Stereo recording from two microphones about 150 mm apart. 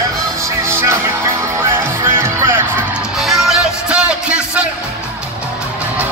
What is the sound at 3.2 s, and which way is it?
Music, centre (ahead or behind).